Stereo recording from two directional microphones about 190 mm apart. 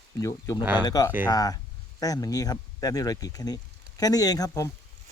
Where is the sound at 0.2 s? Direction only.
15° left (ahead or behind).